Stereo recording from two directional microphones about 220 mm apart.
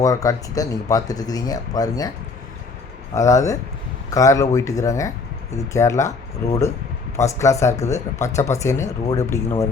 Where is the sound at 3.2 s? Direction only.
15° left (ahead or behind).